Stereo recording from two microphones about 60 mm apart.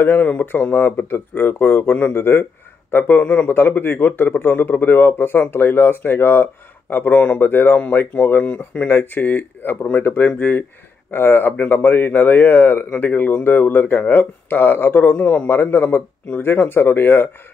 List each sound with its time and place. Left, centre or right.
0.0 s speech: left